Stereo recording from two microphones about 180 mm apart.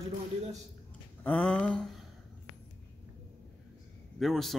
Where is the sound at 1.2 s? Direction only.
10° left (ahead or behind).